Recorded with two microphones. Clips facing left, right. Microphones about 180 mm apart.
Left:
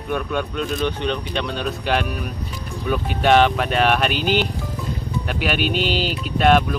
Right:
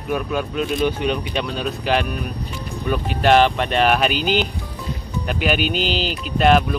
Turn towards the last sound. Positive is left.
turn(degrees=0)  # may be behind; listen again after turning